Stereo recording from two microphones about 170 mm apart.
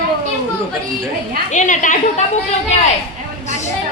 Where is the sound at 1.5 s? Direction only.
45° left (ahead or behind).